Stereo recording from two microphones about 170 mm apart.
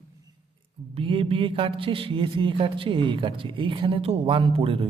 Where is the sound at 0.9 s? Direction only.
30° right (ahead or behind).